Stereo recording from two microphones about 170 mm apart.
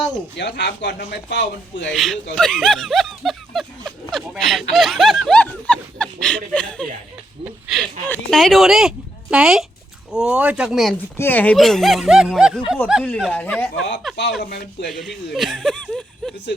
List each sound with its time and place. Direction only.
0.3 s speech: 90° left
1.9 s speech: centre (ahead or behind)
2.3 s snicker: 5° left (ahead or behind)
4.1 s a sound: centre (ahead or behind)
4.7 s snicker: centre (ahead or behind)
7.4 s a sound: centre (ahead or behind)
8.1 s speech: centre (ahead or behind)
11.2 s speech: 10° left (ahead or behind)